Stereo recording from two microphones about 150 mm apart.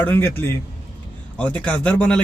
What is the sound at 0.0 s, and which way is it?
A man's voice, 15° left (ahead or behind).